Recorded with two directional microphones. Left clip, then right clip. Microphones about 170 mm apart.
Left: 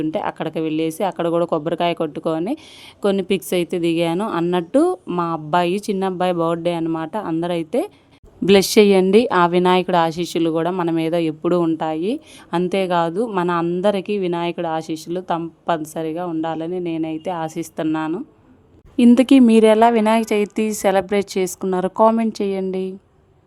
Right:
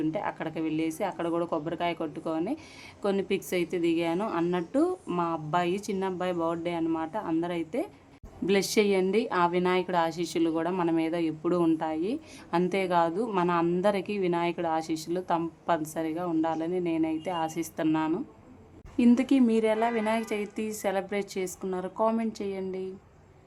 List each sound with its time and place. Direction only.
0.1 s a woman's voice: 45° left (ahead or behind)
8.4 s a woman's voice: 55° left (ahead or behind); by 18.2 s 30° left (ahead or behind)
18.9 s a woman's voice: 50° left (ahead or behind)